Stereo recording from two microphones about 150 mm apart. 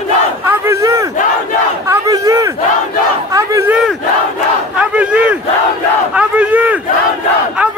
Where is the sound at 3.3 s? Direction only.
20° right (ahead or behind).